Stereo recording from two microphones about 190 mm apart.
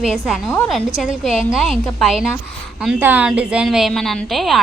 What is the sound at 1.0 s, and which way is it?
Speech, centre (ahead or behind).